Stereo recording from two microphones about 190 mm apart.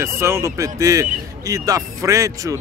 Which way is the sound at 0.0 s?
15° right (ahead or behind).